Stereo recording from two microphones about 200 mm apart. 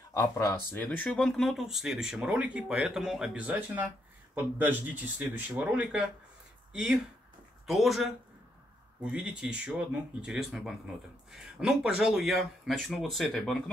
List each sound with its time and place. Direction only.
0.1 s speech: 15° left (ahead or behind); by 13.7 s centre (ahead or behind)